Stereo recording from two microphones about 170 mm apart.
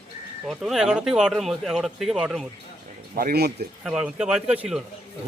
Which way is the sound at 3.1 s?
65° right (ahead or behind).